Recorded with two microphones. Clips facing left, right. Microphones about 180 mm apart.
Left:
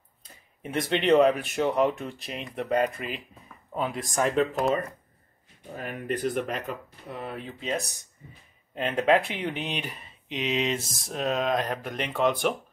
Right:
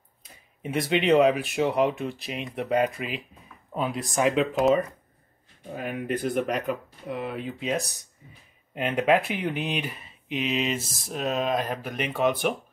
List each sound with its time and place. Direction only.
0.7 s speech: 5° right (ahead or behind)
4.1 s speech: 5° right (ahead or behind)